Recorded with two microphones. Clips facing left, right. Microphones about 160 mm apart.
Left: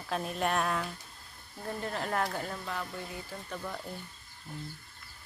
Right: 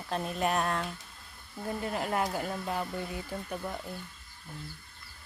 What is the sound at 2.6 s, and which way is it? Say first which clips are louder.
Speech: right 4 dB; 25° right (ahead or behind).